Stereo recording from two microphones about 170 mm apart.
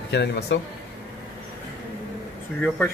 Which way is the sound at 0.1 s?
90° left.